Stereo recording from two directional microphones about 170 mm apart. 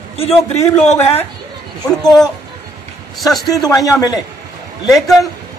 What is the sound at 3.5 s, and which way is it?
Speech, 20° left (ahead or behind).